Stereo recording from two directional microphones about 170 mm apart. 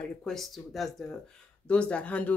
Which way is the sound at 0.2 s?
Centre (ahead or behind).